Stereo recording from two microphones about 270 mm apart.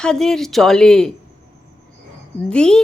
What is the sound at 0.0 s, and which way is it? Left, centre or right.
Speech, centre.